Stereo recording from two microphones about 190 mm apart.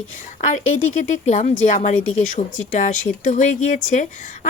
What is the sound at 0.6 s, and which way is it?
Speech, 90° left.